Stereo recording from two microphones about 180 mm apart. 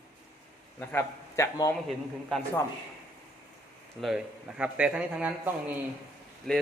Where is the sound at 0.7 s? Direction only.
15° left (ahead or behind).